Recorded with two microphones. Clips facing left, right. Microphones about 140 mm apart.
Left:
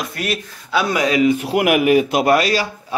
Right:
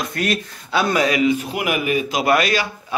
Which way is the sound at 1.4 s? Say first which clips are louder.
Left 7 dB; 70° left (ahead or behind).